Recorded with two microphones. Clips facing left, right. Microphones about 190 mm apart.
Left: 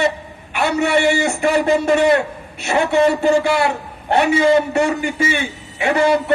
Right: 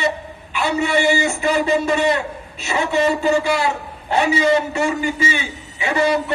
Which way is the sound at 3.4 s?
60° left (ahead or behind).